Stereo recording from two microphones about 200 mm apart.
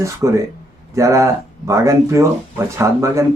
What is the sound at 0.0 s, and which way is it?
A man's voice, 15° right (ahead or behind).